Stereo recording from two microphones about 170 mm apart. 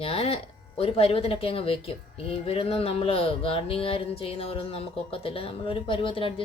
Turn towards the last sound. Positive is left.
turn(degrees=30)  # may be behind; listen again after turning